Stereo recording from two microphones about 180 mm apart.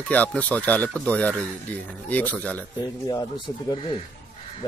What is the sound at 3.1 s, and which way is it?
Speech, 25° left (ahead or behind).